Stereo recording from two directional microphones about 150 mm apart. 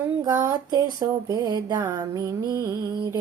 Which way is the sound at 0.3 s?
25° right (ahead or behind).